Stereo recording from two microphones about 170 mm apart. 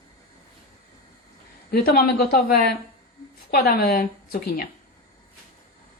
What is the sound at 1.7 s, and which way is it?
A woman's voice, 65° left (ahead or behind).